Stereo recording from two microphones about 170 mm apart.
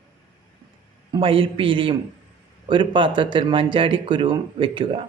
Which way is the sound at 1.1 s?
30° right (ahead or behind).